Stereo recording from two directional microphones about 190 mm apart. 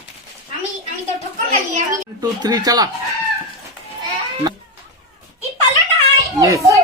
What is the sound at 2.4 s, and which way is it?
Speech, 20° right (ahead or behind).